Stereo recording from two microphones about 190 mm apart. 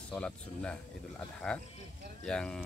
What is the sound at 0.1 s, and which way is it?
Speech, 5° left (ahead or behind).